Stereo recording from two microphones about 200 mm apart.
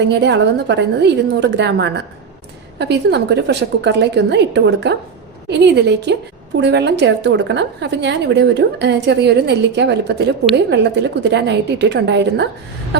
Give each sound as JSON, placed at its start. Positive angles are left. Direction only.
{"t": 0.0, "sound": "a woman's voice", "side_deg": -60}